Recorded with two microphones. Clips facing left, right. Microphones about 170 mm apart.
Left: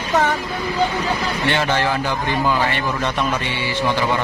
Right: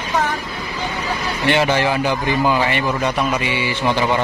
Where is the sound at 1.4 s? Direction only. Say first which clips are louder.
Right 4 dB; 15° right (ahead or behind).